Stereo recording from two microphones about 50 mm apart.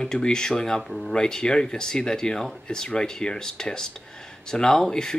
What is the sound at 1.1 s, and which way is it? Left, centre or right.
Speech, centre.